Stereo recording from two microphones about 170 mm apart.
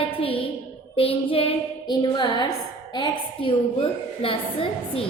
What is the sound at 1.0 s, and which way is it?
Child singing, 35° left (ahead or behind).